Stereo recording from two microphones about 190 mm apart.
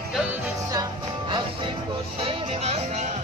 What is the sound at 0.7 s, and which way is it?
Music, 20° right (ahead or behind).